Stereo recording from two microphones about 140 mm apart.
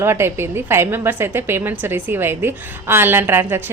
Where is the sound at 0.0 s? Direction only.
20° right (ahead or behind).